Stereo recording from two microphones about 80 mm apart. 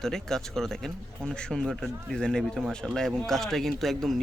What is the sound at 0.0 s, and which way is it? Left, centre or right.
Speech, centre.